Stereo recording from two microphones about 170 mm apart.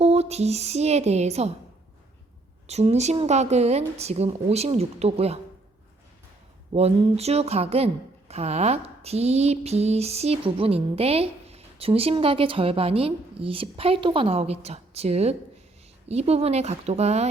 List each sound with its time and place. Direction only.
0.0 s speech: 40° right (ahead or behind)
2.6 s speech: 40° right (ahead or behind)
6.7 s speech: 35° right (ahead or behind)